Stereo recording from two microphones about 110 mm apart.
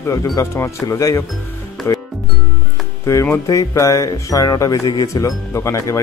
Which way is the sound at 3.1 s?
25° left (ahead or behind).